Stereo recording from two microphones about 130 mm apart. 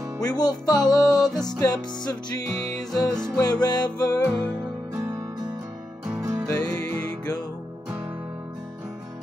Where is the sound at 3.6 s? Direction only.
30° left (ahead or behind).